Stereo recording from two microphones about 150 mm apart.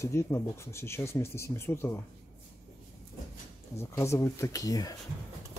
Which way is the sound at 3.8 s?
20° left (ahead or behind).